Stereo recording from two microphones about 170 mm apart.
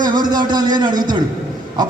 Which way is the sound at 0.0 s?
25° right (ahead or behind).